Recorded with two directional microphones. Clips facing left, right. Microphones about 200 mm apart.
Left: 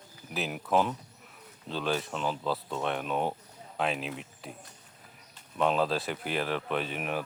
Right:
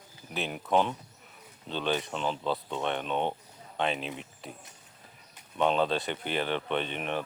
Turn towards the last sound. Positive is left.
turn(degrees=5)  # may be behind; listen again after turning